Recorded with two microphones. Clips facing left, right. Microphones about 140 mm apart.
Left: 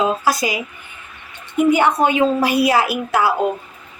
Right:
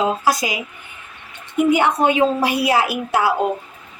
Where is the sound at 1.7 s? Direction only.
20° right (ahead or behind).